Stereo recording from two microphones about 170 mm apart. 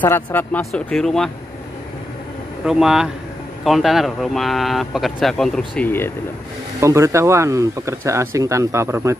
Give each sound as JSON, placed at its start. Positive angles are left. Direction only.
{"t": 0.0, "sound": "speech", "side_deg": 10}
{"t": 2.6, "sound": "speech", "side_deg": -5}
{"t": 5.9, "sound": "speech", "side_deg": 15}
{"t": 6.8, "sound": "speech", "side_deg": -15}